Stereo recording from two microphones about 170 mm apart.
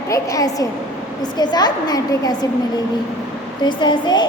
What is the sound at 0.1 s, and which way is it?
A woman's voice, 20° left (ahead or behind).